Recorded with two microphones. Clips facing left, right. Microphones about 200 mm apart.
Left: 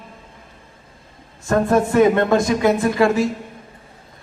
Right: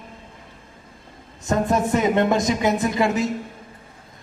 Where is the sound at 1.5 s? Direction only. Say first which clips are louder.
Left 4 dB; 20° right (ahead or behind).